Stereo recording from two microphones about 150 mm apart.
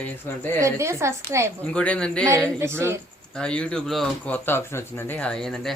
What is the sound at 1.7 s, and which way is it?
Speech, 5° left (ahead or behind).